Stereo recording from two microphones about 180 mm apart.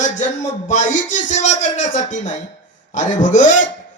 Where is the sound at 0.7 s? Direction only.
45° left (ahead or behind).